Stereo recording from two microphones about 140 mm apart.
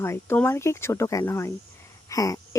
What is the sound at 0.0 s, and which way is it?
Speech, 15° left (ahead or behind).